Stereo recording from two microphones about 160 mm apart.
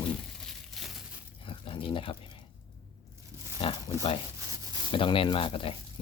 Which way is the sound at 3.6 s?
35° left (ahead or behind).